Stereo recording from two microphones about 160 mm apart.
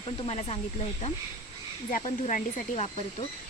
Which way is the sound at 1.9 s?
55° left (ahead or behind).